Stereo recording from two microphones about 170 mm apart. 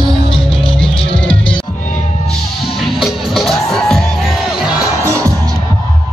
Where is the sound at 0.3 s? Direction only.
5° left (ahead or behind).